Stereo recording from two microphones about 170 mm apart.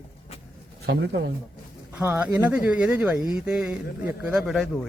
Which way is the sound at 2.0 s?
10° right (ahead or behind).